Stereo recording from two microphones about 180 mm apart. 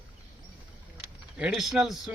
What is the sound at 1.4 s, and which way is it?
Speech, 5° right (ahead or behind).